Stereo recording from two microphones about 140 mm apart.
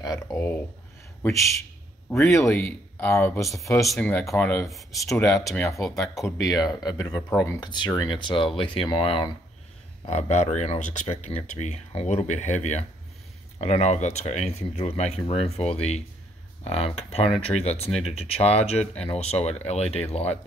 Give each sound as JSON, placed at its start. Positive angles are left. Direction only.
{"t": 0.0, "sound": "speech", "side_deg": 25}
{"t": 2.0, "sound": "speech", "side_deg": 0}
{"t": 2.3, "sound": "speech", "side_deg": 20}
{"t": 3.7, "sound": "speech", "side_deg": 0}
{"t": 4.0, "sound": "speech", "side_deg": 15}
{"t": 4.6, "sound": "speech", "side_deg": 0}
{"t": 6.5, "sound": "speech", "side_deg": 25}
{"t": 10.0, "sound": "speech", "side_deg": 55}